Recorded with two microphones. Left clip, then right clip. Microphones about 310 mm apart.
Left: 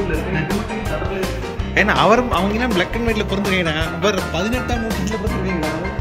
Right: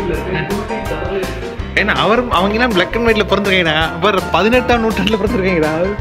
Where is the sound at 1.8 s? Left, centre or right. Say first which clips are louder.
Right 1 dB; centre.